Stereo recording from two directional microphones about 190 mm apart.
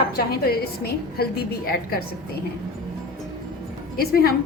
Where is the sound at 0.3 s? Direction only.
55° left (ahead or behind).